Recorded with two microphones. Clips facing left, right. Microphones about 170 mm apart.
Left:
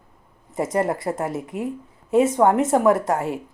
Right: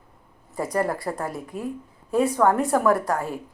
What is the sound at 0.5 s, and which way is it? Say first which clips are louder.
Speech: left 3 dB; 20° left (ahead or behind).